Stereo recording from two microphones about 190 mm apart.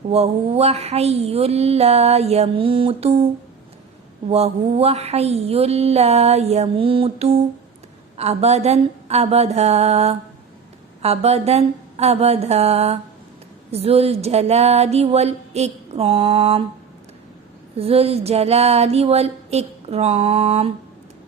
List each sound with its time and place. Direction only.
0.1 s speech: 35° right (ahead or behind)
4.3 s speech: 30° right (ahead or behind)
17.7 s speech: 30° right (ahead or behind)